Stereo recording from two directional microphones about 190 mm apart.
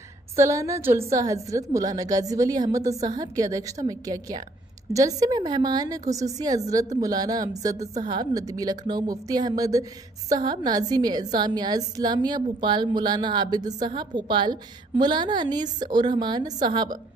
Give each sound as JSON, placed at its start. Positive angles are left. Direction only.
{"t": 0.4, "sound": "a woman's voice", "side_deg": -15}